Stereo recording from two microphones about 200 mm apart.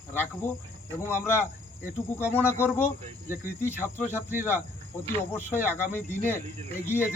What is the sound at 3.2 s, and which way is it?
Cricket, 45° left (ahead or behind).